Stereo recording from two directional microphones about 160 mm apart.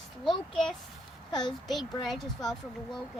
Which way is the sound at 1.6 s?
Centre (ahead or behind).